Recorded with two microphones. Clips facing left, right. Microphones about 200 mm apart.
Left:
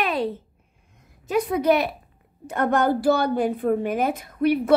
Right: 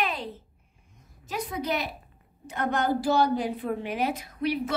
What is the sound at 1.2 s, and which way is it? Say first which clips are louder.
A woman's voice: left 11 dB; 60° left (ahead or behind).